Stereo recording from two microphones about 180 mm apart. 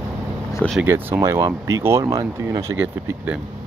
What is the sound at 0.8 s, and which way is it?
Speech, 10° right (ahead or behind).